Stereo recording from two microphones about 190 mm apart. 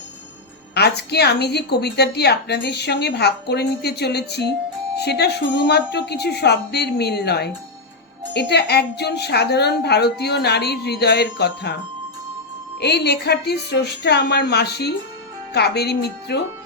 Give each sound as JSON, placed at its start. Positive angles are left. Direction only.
{"t": 0.7, "sound": "a woman's voice", "side_deg": 60}
{"t": 12.8, "sound": "a woman's voice", "side_deg": 60}